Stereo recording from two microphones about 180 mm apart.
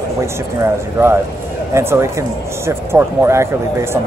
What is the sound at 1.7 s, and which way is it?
A man's voice, 15° right (ahead or behind).